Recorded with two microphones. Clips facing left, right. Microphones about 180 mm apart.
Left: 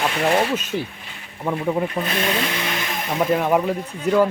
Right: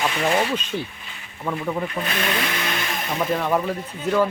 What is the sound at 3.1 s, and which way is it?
Speech, 10° left (ahead or behind).